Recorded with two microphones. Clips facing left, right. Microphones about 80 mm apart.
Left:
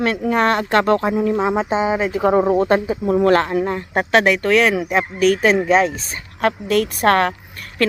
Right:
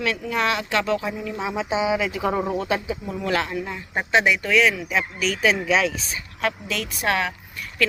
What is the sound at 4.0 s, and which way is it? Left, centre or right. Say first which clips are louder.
Speech: left 4 dB; left.